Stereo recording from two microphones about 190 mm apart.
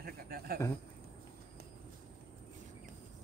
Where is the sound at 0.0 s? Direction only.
50° right (ahead or behind).